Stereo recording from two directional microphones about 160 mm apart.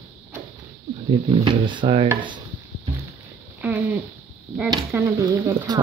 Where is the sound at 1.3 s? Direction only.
30° right (ahead or behind).